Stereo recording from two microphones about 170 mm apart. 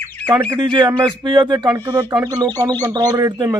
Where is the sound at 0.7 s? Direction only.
25° right (ahead or behind).